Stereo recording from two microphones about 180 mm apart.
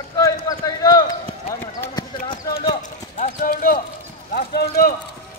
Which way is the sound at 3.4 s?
55° left (ahead or behind).